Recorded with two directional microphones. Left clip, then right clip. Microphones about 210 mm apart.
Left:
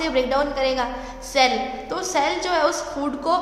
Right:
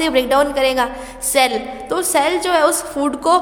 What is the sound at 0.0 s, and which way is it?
A woman's voice, 50° right (ahead or behind).